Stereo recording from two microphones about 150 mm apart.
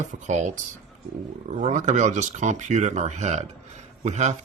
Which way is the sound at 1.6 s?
55° right (ahead or behind).